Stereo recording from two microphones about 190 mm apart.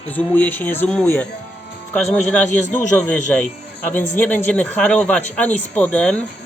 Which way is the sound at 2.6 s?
40° left (ahead or behind).